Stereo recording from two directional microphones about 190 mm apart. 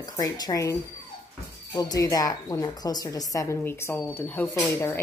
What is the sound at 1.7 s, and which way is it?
A woman's voice, 20° left (ahead or behind).